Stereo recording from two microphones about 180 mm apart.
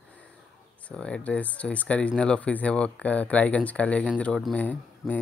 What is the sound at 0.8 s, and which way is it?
Speech, 5° left (ahead or behind).